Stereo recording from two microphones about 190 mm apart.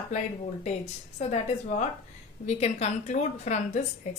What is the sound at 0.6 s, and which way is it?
A woman's voice, 35° left (ahead or behind).